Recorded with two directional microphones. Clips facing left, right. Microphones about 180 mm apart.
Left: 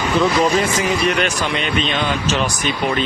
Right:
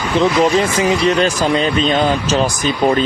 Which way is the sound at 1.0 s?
35° right (ahead or behind).